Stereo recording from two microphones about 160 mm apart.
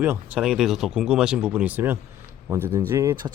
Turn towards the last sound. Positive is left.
turn(degrees=-20)  # may be behind; listen again after turning